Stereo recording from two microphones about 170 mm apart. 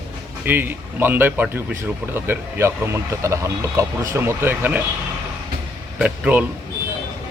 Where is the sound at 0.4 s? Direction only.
10° right (ahead or behind).